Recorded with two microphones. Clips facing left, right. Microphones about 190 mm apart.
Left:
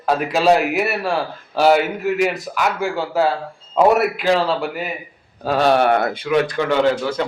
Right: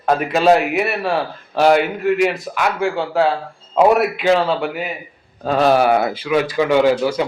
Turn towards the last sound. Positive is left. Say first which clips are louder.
# right 3 dB
turn(degrees=-10)  # may be behind; listen again after turning